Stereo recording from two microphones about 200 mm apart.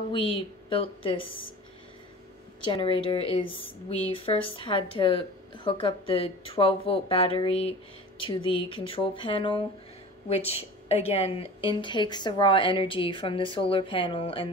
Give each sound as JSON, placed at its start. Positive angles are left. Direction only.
{"t": 0.1, "sound": "a woman's voice", "side_deg": 25}
{"t": 2.7, "sound": "a woman's voice", "side_deg": 25}